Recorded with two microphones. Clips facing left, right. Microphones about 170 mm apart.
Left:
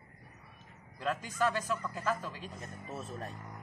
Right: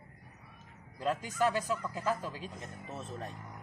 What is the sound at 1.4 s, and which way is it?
Speech, 15° right (ahead or behind).